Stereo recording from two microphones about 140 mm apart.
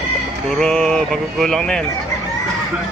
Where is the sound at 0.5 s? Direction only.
5° left (ahead or behind).